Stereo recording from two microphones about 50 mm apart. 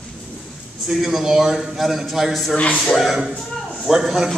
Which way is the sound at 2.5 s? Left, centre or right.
Left.